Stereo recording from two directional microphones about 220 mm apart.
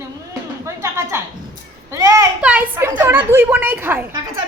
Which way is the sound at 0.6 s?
10° right (ahead or behind).